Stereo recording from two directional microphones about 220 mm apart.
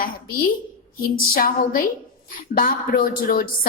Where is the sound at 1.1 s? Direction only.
40° left (ahead or behind).